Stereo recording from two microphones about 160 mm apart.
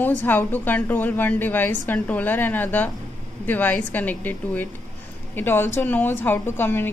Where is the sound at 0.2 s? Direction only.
10° left (ahead or behind).